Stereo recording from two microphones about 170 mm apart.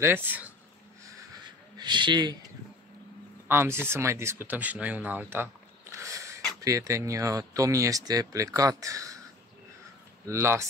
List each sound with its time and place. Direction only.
0.0 s speech: 10° right (ahead or behind)
1.8 s speech: 25° right (ahead or behind)
3.4 s speech: 15° right (ahead or behind)
10.2 s speech: 15° right (ahead or behind)